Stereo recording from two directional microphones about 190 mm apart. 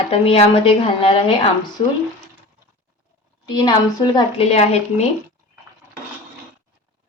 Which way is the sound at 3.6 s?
20° left (ahead or behind).